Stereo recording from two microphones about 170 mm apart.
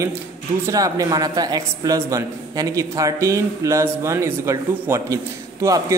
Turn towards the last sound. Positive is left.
turn(degrees=-20)  # may be behind; listen again after turning